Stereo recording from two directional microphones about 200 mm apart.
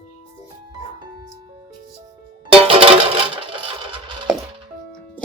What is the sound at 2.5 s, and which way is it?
Music, 30° right (ahead or behind).